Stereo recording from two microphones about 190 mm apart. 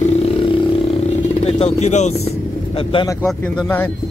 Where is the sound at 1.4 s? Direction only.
35° left (ahead or behind).